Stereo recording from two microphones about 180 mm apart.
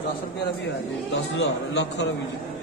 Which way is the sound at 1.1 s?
75° left (ahead or behind).